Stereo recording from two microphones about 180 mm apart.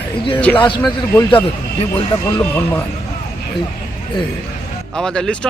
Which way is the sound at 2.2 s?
15° left (ahead or behind).